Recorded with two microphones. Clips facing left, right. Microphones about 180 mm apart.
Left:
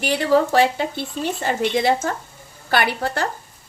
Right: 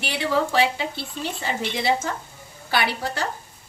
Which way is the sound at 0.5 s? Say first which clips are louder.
Left 4 dB; 45° left (ahead or behind).